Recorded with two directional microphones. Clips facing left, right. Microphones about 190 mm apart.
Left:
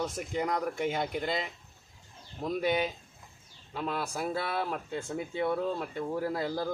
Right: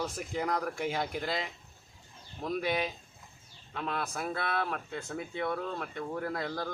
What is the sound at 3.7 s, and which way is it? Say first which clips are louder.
Speech: left 2 dB; 10° left (ahead or behind).